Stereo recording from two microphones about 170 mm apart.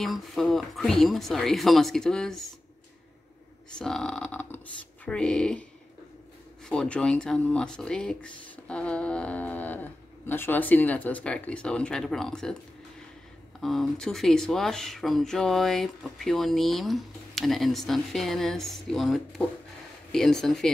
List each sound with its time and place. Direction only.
0.0 s speech: centre (ahead or behind)
3.7 s speech: 5° left (ahead or behind)
13.6 s speech: centre (ahead or behind)